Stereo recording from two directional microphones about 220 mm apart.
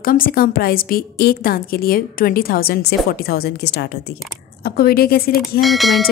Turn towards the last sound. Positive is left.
turn(degrees=0)  # may be behind; listen again after turning